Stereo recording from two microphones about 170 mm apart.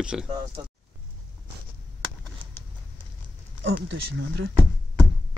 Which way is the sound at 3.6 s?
90° right.